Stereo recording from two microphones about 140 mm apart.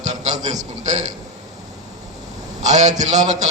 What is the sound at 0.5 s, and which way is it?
Speech, 55° right (ahead or behind).